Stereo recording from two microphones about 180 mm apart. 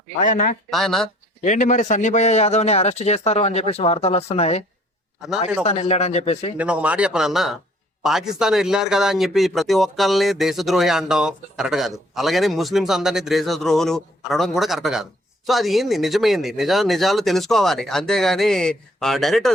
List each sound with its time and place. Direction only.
0.2 s speech: 45° left (ahead or behind)
0.7 s speech: centre (ahead or behind)
1.5 s a man's voice: 45° left (ahead or behind)
5.6 s a man's voice: 35° left (ahead or behind)
6.6 s speech: 5° right (ahead or behind)